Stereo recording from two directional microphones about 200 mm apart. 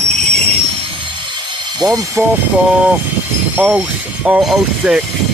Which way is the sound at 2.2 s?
10° right (ahead or behind).